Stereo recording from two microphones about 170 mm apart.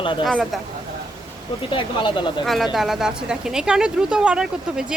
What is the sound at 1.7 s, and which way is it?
Speech, 30° left (ahead or behind).